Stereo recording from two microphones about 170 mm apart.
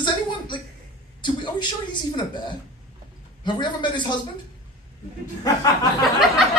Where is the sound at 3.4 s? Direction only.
25° left (ahead or behind).